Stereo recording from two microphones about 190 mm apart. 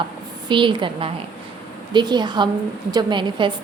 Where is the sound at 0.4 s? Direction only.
25° right (ahead or behind).